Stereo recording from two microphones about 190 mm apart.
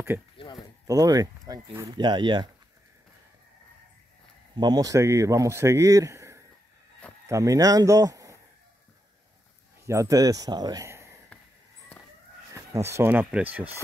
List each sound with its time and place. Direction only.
0.8 s speech: 20° right (ahead or behind)
4.6 s a man's voice: 20° right (ahead or behind)
9.8 s speech: 15° right (ahead or behind)
12.5 s a man's voice: 15° right (ahead or behind)